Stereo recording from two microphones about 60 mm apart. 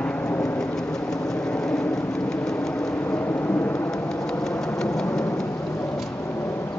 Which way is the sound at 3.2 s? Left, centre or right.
Left.